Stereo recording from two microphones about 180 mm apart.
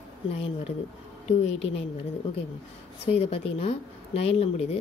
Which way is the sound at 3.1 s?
35° left (ahead or behind).